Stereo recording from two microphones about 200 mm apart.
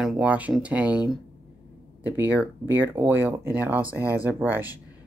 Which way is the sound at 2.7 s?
10° right (ahead or behind).